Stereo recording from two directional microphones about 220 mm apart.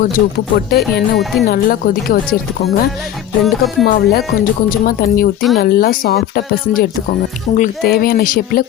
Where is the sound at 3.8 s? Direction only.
45° left (ahead or behind).